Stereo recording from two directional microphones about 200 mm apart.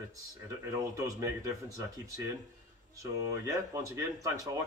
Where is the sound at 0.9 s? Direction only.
15° right (ahead or behind).